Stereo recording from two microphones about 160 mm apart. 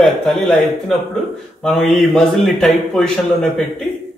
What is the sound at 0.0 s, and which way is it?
Speech, centre (ahead or behind).